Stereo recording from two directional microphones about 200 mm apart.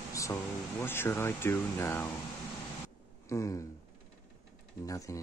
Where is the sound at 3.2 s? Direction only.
15° left (ahead or behind).